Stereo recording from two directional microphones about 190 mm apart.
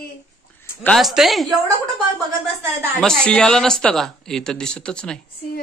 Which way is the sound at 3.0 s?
5° left (ahead or behind).